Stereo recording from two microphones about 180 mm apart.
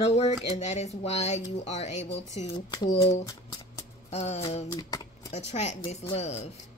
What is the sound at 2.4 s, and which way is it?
Speech, 25° left (ahead or behind).